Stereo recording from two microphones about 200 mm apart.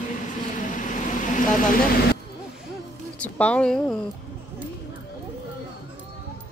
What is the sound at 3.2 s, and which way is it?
Speech, 5° left (ahead or behind).